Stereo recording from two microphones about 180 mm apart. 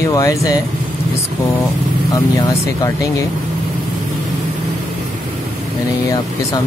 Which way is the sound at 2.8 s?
15° left (ahead or behind).